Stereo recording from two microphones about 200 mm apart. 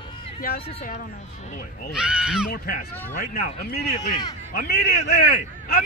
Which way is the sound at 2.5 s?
45° left (ahead or behind).